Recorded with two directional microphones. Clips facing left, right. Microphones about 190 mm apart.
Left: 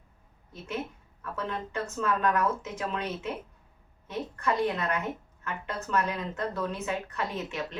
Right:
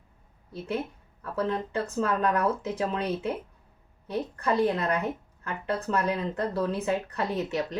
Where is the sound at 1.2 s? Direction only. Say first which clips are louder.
Right 6 dB; 35° right (ahead or behind).